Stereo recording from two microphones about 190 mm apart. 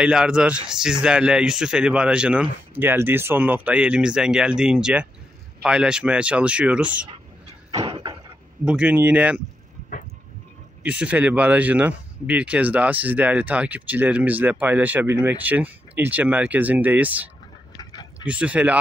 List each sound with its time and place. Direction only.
0.0 s speech: 5° right (ahead or behind)
7.7 s a sound: 25° right (ahead or behind)
8.6 s speech: 5° right (ahead or behind)
10.8 s speech: 5° right (ahead or behind)